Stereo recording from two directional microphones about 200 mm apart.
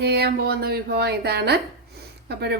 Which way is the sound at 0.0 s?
55° right (ahead or behind).